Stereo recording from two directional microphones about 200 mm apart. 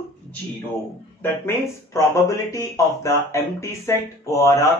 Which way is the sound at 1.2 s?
15° left (ahead or behind).